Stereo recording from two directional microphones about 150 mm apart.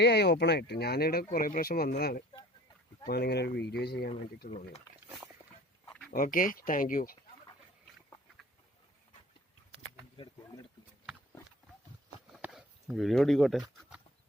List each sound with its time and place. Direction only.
0.0 s speech: 90° left
4.4 s speech: 45° left (ahead or behind)
6.1 s speech: 65° left (ahead or behind)
12.4 s a sound: 5° right (ahead or behind)